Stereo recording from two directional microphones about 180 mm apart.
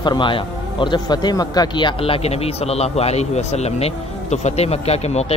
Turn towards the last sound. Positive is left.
turn(degrees=35)  # may be behind; listen again after turning